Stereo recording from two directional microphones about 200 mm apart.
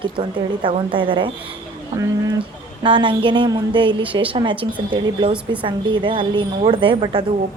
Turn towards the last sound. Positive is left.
turn(degrees=-25)  # may be behind; listen again after turning